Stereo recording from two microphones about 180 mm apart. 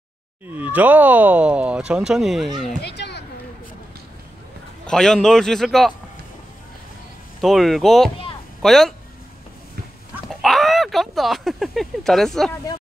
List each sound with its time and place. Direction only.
0.5 s speech: 10° right (ahead or behind)
2.8 s children playing: 70° left (ahead or behind)
4.8 s speech: 5° left (ahead or behind)
7.4 s speech: centre (ahead or behind)
10.4 s speech: centre (ahead or behind)